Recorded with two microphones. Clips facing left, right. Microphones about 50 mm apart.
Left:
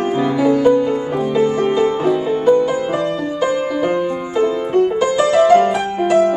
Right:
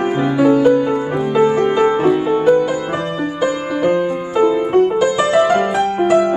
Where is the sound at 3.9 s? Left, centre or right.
Centre.